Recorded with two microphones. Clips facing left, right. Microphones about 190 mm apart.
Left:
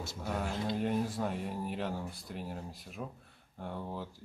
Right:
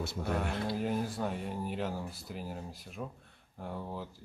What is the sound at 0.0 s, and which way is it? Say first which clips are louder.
Speech: right 4 dB; 60° right (ahead or behind).